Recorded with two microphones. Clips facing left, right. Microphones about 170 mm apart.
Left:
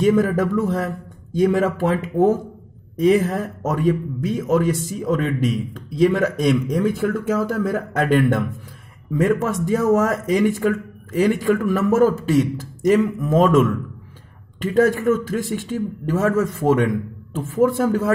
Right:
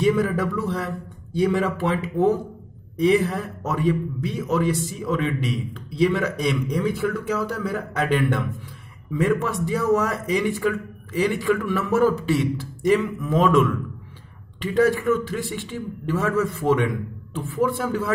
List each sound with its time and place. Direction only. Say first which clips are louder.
0.0 s a man's voice: left 4 dB; 45° left (ahead or behind)